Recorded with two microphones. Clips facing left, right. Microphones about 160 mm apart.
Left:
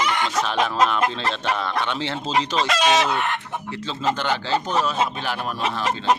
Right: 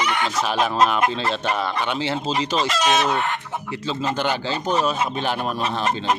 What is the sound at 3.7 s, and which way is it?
Speech, 10° right (ahead or behind).